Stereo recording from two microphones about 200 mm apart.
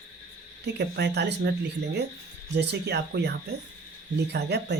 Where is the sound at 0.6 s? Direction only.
55° right (ahead or behind).